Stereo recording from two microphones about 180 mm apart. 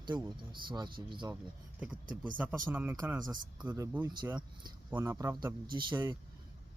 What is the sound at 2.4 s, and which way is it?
Speech, 10° right (ahead or behind).